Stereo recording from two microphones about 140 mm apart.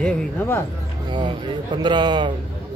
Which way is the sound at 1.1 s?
35° right (ahead or behind).